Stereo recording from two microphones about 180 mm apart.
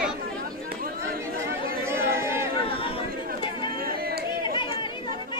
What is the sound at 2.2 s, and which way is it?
Chatter, 15° right (ahead or behind).